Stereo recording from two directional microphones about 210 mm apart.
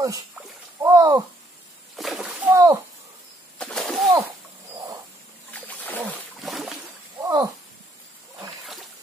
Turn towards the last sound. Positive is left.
turn(degrees=-20)  # may be behind; listen again after turning